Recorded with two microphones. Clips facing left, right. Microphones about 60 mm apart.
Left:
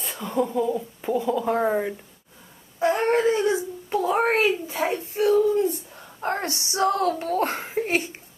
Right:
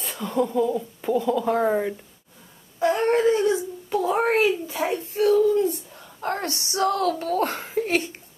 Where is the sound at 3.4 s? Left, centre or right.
Left.